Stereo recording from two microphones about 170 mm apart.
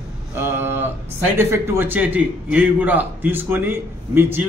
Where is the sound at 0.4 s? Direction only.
15° right (ahead or behind).